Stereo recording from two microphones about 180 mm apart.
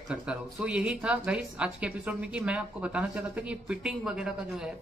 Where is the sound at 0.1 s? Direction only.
5° right (ahead or behind).